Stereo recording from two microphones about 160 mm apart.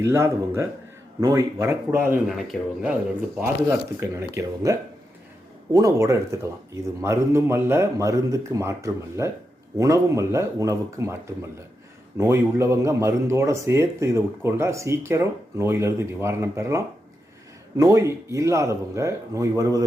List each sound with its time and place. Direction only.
0.0 s speech: 15° right (ahead or behind)
2.2 s a man's voice: centre (ahead or behind)
3.4 s speech: 15° right (ahead or behind)